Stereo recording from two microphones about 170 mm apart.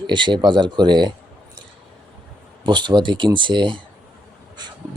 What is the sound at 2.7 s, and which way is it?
Speech, 25° right (ahead or behind).